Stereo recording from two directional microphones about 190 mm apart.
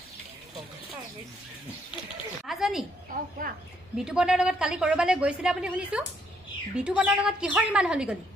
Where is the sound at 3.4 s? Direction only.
45° right (ahead or behind).